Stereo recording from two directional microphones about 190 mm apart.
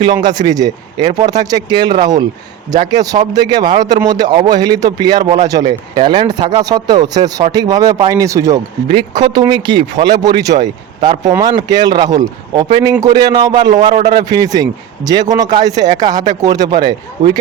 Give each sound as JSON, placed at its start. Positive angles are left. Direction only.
{"t": 0.0, "sound": "speech", "side_deg": -25}